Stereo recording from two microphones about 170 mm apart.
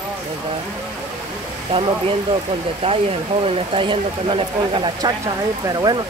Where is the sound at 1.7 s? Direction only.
30° right (ahead or behind).